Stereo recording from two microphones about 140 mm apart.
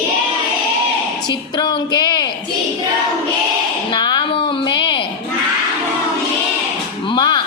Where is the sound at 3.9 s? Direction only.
35° left (ahead or behind).